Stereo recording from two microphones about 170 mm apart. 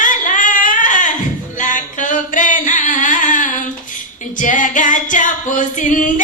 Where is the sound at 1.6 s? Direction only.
50° left (ahead or behind).